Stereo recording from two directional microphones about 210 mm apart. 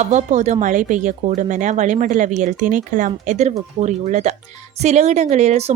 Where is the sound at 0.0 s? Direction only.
35° right (ahead or behind).